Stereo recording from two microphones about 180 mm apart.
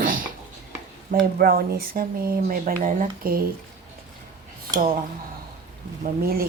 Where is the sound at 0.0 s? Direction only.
50° right (ahead or behind).